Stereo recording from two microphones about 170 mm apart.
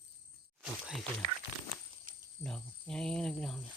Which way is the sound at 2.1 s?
55° right (ahead or behind).